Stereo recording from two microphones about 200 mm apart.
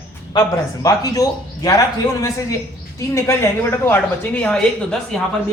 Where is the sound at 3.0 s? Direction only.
15° left (ahead or behind).